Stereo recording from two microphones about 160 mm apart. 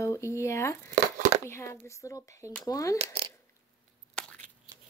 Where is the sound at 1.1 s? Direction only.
50° right (ahead or behind).